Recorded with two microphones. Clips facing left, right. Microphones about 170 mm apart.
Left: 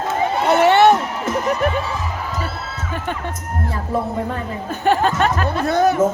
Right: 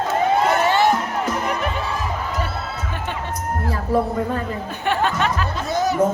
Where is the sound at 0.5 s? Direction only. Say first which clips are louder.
Left 5 dB; 70° left (ahead or behind).